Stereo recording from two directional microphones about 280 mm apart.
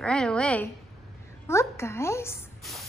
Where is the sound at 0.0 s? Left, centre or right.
Centre.